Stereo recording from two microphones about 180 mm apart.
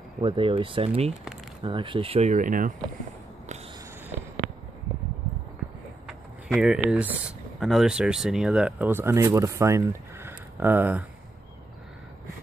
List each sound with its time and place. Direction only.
0.2 s speech: 30° right (ahead or behind); by 2.7 s 45° right (ahead or behind)
6.0 s speech: 5° right (ahead or behind)